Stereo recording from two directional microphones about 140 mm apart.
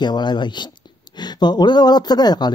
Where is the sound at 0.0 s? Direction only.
30° left (ahead or behind).